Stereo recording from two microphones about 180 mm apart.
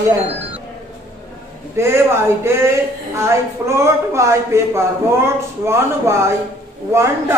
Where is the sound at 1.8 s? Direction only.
15° right (ahead or behind).